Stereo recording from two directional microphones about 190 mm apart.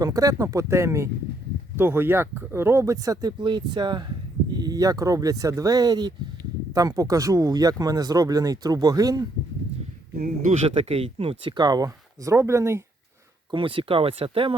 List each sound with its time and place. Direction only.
0.0 s speech: 20° right (ahead or behind)
10.2 s speech: 35° right (ahead or behind); by 12.8 s 15° right (ahead or behind)
13.5 s speech: 25° right (ahead or behind)